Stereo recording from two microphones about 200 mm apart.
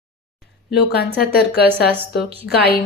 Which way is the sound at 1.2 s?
50° left (ahead or behind).